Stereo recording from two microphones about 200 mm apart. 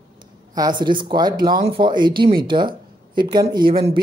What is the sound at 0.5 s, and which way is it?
Speech, 20° right (ahead or behind).